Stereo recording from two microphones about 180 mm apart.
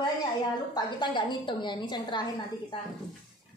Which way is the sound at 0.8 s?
25° left (ahead or behind).